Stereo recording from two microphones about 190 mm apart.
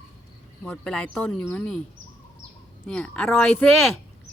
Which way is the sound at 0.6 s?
5° left (ahead or behind).